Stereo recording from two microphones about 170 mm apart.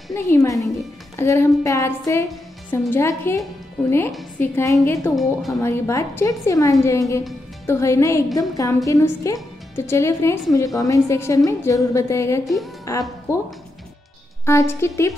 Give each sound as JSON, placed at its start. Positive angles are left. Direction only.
{"t": 0.1, "sound": "a woman's voice", "side_deg": 20}
{"t": 0.6, "sound": "a woman's voice", "side_deg": 0}
{"t": 1.1, "sound": "a woman's voice", "side_deg": 15}
{"t": 4.4, "sound": "a woman's voice", "side_deg": 15}
{"t": 5.1, "sound": "a woman's voice", "side_deg": 0}
{"t": 5.6, "sound": "a woman's voice", "side_deg": 15}